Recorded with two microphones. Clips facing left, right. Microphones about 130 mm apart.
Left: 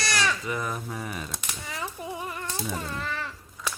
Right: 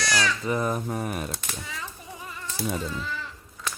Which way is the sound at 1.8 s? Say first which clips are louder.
Left 6 dB; 60° left (ahead or behind).